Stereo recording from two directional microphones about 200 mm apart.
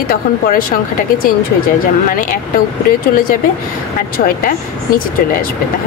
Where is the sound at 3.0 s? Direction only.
45° left (ahead or behind).